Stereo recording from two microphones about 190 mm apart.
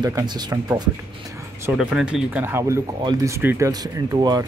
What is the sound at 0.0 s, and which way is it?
Speech, 20° right (ahead or behind).